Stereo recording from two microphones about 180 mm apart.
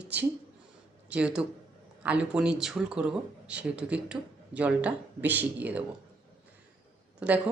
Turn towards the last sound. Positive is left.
turn(degrees=-5)  # may be behind; listen again after turning